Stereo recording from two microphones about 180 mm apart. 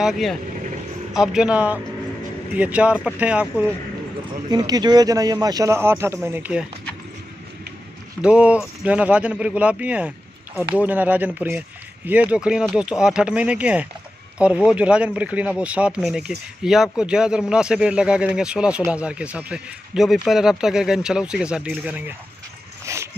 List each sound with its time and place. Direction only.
0.0 s speech: centre (ahead or behind)
4.5 s speech: 20° right (ahead or behind)
8.2 s speech: 5° right (ahead or behind)
22.9 s a sound: 15° right (ahead or behind)